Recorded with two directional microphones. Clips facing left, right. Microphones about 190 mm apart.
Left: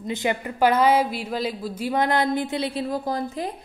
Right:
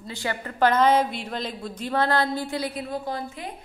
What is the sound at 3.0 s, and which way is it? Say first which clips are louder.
Speech: left 5 dB; 40° left (ahead or behind).